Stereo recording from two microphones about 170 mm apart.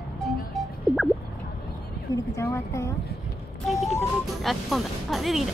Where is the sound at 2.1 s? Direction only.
20° left (ahead or behind).